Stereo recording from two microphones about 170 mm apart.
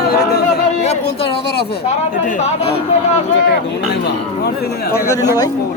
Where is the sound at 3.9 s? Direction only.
75° left (ahead or behind).